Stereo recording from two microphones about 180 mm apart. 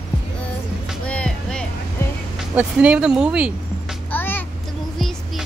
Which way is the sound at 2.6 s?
5° right (ahead or behind).